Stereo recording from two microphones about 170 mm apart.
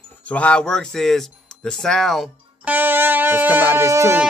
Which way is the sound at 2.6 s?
10° right (ahead or behind).